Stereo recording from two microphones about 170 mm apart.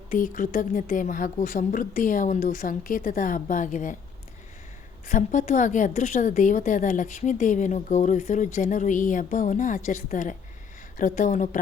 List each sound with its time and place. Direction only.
0.1 s a woman's voice: 50° left (ahead or behind)
5.0 s a woman's voice: 50° left (ahead or behind)